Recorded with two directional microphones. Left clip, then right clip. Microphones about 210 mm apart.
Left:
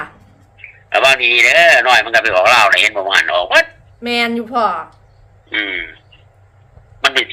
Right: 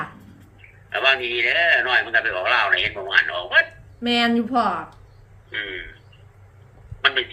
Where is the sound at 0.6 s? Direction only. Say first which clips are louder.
Left 12 dB; 55° left (ahead or behind).